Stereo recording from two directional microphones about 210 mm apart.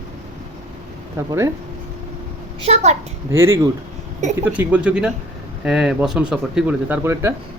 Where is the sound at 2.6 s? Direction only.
30° right (ahead or behind).